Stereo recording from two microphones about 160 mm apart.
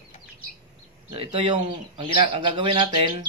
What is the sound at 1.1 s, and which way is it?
A man's voice, 35° right (ahead or behind).